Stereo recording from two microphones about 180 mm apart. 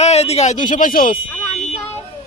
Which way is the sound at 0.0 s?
35° left (ahead or behind).